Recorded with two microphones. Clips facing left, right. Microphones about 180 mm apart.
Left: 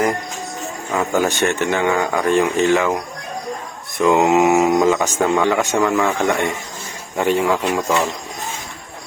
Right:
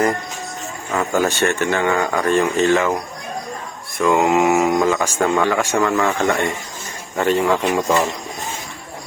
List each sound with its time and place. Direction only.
0.9 s speech: 15° left (ahead or behind)
3.9 s mantra: 10° left (ahead or behind)
4.2 s speech: 20° left (ahead or behind); by 8.1 s centre (ahead or behind)